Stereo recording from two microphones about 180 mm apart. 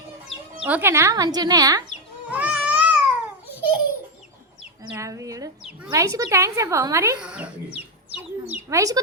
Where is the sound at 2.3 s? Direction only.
5° right (ahead or behind).